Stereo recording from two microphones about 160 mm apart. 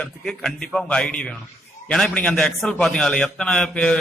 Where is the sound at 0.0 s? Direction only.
5° left (ahead or behind).